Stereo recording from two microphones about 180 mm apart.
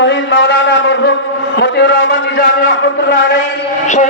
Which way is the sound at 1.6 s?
70° left (ahead or behind).